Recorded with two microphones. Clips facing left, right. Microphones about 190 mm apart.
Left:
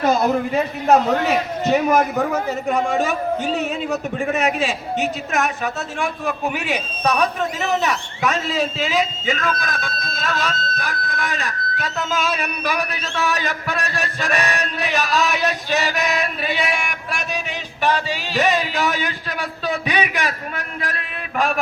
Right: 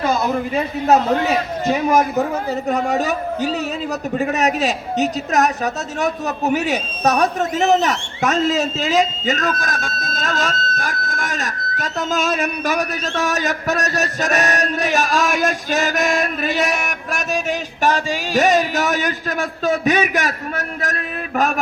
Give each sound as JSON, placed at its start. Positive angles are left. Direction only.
{"t": 1.6, "sound": "a man's voice", "side_deg": -10}
{"t": 2.6, "sound": "a man's voice", "side_deg": -40}